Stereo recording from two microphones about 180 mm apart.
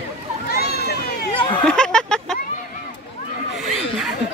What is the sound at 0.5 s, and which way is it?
Cat, 60° left (ahead or behind).